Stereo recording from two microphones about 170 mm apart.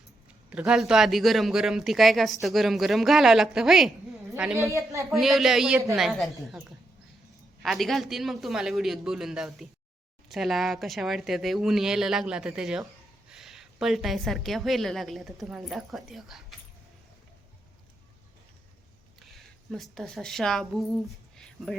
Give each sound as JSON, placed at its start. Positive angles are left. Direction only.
{"t": 0.5, "sound": "speech", "side_deg": -5}
{"t": 4.6, "sound": "a woman's voice", "side_deg": -15}
{"t": 5.1, "sound": "speech", "side_deg": 0}
{"t": 19.3, "sound": "speech", "side_deg": 0}